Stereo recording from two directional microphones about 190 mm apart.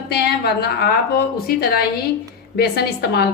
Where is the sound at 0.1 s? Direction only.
55° left (ahead or behind).